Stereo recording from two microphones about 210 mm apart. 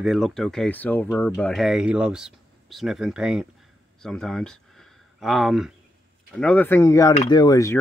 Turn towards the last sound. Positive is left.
turn(degrees=15)  # may be behind; listen again after turning